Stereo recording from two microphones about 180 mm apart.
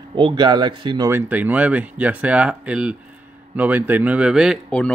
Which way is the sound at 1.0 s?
10° right (ahead or behind).